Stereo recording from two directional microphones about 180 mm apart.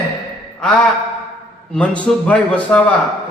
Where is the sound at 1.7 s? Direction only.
5° left (ahead or behind).